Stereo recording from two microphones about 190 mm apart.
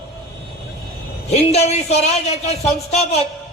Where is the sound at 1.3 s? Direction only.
35° left (ahead or behind).